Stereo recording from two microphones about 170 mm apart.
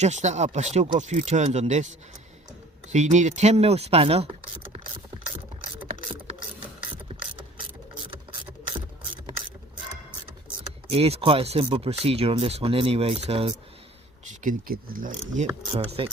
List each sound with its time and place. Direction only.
0.0 s speech: 45° right (ahead or behind)
2.9 s speech: 45° right (ahead or behind)
7.1 s ratchet: 30° right (ahead or behind)
10.8 s speech: 35° right (ahead or behind)
14.4 s speech: 60° right (ahead or behind)
15.3 s speech: 45° right (ahead or behind)